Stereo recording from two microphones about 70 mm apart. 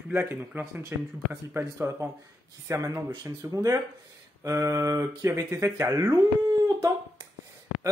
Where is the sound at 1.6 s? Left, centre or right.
Right.